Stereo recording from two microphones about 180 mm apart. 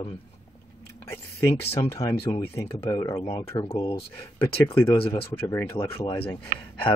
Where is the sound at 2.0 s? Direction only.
35° left (ahead or behind).